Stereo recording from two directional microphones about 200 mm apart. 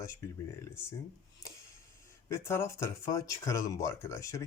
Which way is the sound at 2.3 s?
15° left (ahead or behind).